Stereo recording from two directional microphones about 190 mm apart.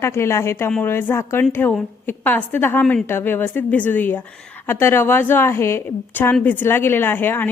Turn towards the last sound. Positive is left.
turn(degrees=10)  # may be behind; listen again after turning